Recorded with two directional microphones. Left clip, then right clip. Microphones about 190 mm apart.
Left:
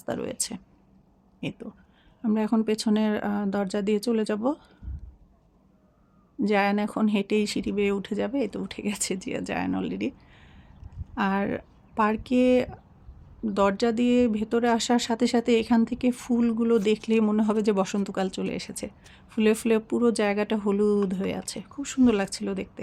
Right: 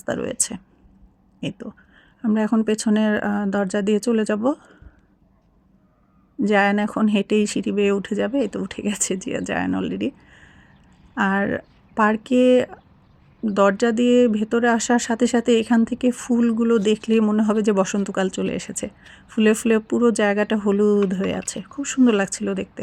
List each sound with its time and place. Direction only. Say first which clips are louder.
0.0 s speech: right 6 dB; 20° right (ahead or behind)
6.4 s speech: right 6 dB; 20° right (ahead or behind)